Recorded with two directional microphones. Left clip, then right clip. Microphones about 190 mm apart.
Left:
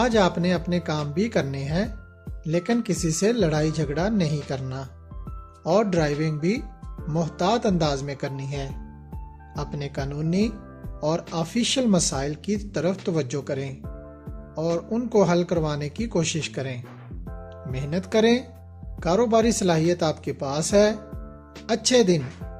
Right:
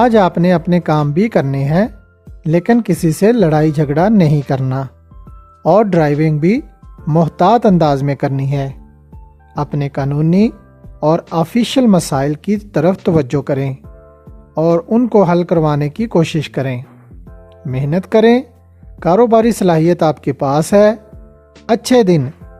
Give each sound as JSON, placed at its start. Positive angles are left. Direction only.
{"t": 0.0, "sound": "speech", "side_deg": -50}